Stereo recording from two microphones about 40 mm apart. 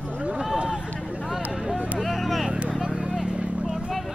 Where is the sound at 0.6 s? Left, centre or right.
Right.